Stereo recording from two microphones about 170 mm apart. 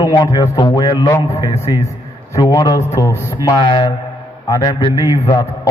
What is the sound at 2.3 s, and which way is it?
A man's voice, 20° left (ahead or behind).